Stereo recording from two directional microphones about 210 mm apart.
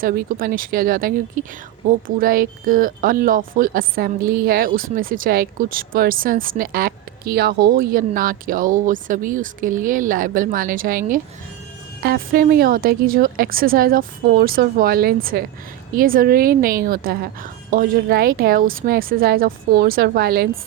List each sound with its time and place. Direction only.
0.0 s speech: 45° right (ahead or behind)